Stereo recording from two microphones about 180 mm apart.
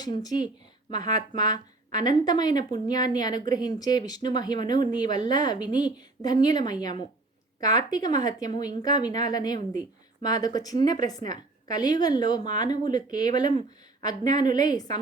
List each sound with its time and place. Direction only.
0.0 s speech: 20° left (ahead or behind)